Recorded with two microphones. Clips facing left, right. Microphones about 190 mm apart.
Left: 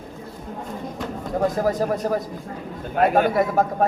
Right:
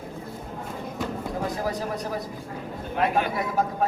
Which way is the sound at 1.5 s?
50° left (ahead or behind).